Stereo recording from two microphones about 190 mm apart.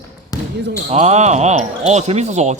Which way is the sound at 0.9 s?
35° right (ahead or behind).